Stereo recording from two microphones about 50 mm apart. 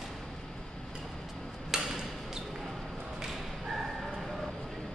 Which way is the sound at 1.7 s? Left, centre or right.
Centre.